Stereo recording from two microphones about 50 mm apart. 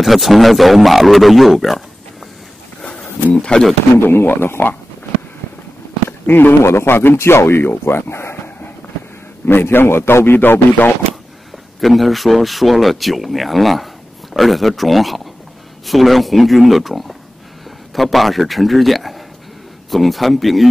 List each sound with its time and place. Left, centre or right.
0.0 s speech: centre
2.8 s a sound: left
3.3 s speech: centre
3.9 s a man's voice: left
6.0 s a sound: left
6.6 s speech: left
9.5 s a man's voice: left
11.8 s speech: centre